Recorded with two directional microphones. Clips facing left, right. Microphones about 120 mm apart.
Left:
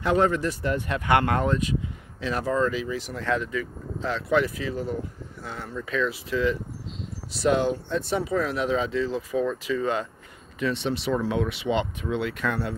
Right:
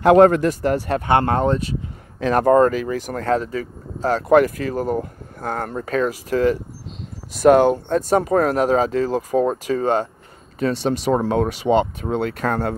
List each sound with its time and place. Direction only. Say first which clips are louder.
0.1 s speech: right 10 dB; 65° right (ahead or behind)
0.6 s speech: right 7 dB; 40° right (ahead or behind)
2.1 s speech: right 11 dB; 50° right (ahead or behind)